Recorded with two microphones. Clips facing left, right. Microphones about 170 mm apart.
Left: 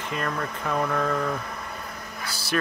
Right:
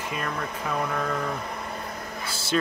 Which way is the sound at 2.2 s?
25° right (ahead or behind).